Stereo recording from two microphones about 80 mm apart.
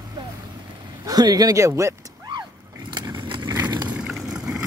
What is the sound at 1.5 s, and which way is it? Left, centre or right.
Speech, right.